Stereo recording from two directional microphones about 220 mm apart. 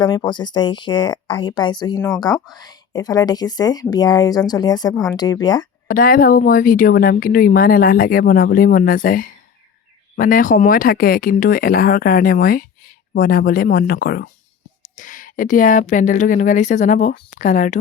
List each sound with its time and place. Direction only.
0.0 s speech: 20° left (ahead or behind)
5.9 s speech: 40° left (ahead or behind)